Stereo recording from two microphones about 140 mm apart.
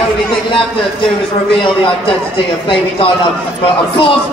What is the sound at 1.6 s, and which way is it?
A man's voice, 35° left (ahead or behind).